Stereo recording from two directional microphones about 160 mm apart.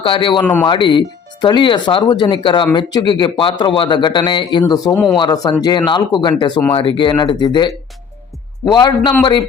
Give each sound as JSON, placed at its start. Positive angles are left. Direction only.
{"t": 0.0, "sound": "speech", "side_deg": 30}